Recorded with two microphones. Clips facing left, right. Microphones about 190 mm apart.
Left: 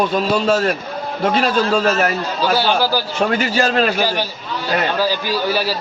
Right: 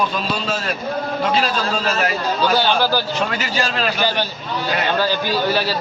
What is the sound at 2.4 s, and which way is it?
Speech, 10° left (ahead or behind).